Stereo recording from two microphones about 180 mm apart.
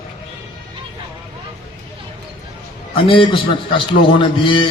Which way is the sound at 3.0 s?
30° left (ahead or behind).